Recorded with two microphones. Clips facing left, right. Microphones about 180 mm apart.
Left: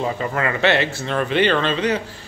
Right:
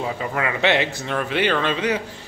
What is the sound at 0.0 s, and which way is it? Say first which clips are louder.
Mantra: left 2 dB; 5° right (ahead or behind).